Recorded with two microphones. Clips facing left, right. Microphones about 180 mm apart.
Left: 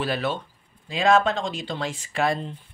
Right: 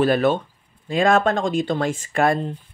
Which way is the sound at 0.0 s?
50° right (ahead or behind).